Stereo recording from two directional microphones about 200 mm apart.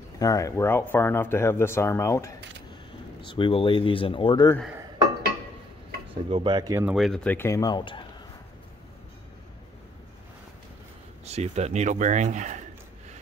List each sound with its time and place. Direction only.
0.2 s speech: 15° left (ahead or behind)
6.0 s speech: 25° right (ahead or behind)
7.0 s speech: 5° left (ahead or behind); by 8.0 s 25° left (ahead or behind)
11.2 s speech: 35° right (ahead or behind)